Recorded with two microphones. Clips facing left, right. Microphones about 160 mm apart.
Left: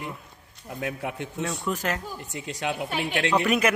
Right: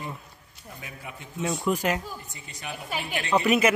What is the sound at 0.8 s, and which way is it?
Speech, 70° left (ahead or behind).